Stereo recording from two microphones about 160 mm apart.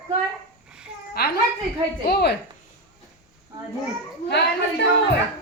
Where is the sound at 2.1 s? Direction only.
90° left.